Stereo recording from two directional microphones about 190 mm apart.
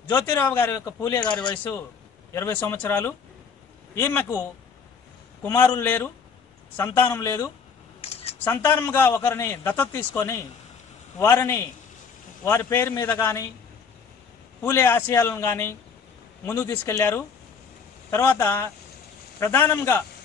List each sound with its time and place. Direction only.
0.1 s a man's voice: 10° left (ahead or behind)
5.4 s a man's voice: 15° left (ahead or behind)
8.0 s typing: 30° left (ahead or behind)
8.5 s a man's voice: 10° left (ahead or behind)
14.6 s a man's voice: 10° left (ahead or behind)